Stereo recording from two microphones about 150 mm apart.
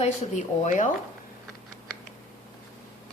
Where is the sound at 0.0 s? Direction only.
55° left (ahead or behind).